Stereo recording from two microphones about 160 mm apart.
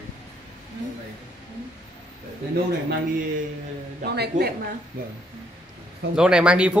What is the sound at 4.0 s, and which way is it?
Speech, 90° right.